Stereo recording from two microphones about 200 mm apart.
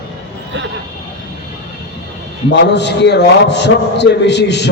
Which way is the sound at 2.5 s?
60° left (ahead or behind).